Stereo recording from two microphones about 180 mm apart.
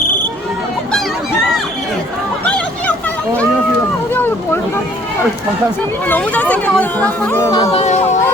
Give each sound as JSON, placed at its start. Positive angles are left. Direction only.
{"t": 4.1, "sound": "a sound", "side_deg": 10}
{"t": 6.1, "sound": "speech", "side_deg": 10}
{"t": 7.5, "sound": "speech", "side_deg": 35}